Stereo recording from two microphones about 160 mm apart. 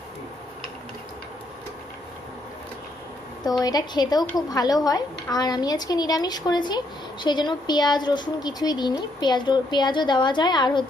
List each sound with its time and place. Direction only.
3.4 s a woman's voice: 25° left (ahead or behind)